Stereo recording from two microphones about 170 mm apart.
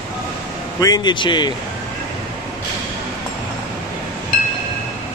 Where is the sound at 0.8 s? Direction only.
25° left (ahead or behind).